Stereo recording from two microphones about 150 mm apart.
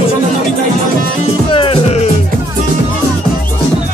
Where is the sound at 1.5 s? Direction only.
35° left (ahead or behind).